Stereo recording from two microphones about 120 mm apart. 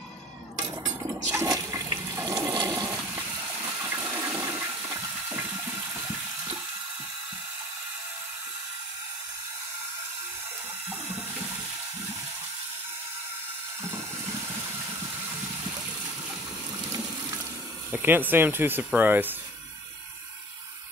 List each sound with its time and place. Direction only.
0.6 s toilet flush: 25° right (ahead or behind)
3.8 s toilet flush: 20° right (ahead or behind)
17.9 s speech: 15° right (ahead or behind)